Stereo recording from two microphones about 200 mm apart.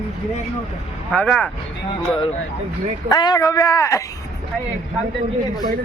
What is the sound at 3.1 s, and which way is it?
Speech, 20° left (ahead or behind).